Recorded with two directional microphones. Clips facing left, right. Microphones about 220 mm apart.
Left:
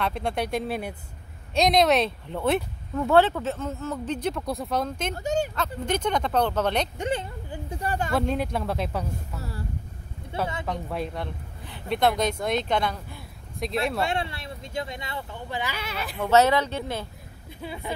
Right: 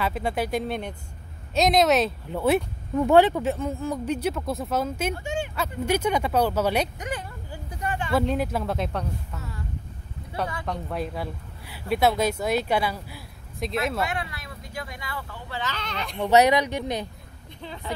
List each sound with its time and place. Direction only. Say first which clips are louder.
0.0 s speech: right 1 dB; 5° right (ahead or behind)
5.1 s speech: left 4 dB; 40° left (ahead or behind)
5.9 s speech: right 2 dB; 10° right (ahead or behind)
7.0 s a sound: left 5 dB; 25° left (ahead or behind)
7.8 s speech: left 1 dB; 40° left (ahead or behind)
8.1 s speech: right 3 dB; centre (ahead or behind)
10.4 s speech: even; 5° left (ahead or behind)
14.0 s speech: left 3 dB; 30° left (ahead or behind); by 16.3 s 5° left (ahead or behind)
16.3 s speech: right 1 dB; 15° right (ahead or behind)
17.6 s speech: left 1 dB; 10° left (ahead or behind)